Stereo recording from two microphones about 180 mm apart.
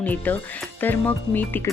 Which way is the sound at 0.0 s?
10° left (ahead or behind).